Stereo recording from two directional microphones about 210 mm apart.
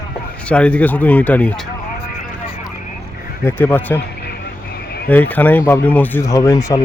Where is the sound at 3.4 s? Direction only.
10° left (ahead or behind).